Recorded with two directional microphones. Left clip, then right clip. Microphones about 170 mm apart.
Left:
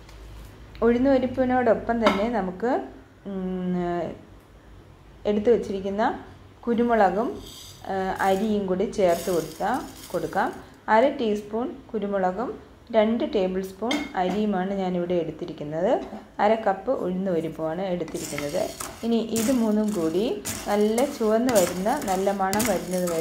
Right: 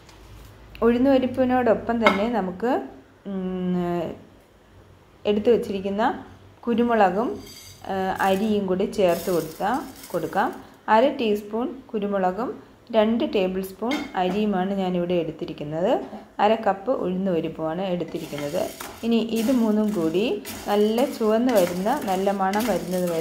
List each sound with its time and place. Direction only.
0.7 s speech: 10° right (ahead or behind)
5.2 s speech: 10° right (ahead or behind)